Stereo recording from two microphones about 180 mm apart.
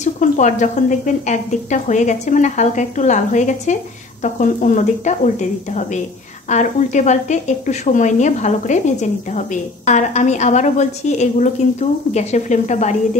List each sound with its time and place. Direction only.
0.0 s a woman's voice: 45° left (ahead or behind)